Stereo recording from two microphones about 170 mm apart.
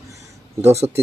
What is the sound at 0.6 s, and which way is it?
Speech, 15° right (ahead or behind).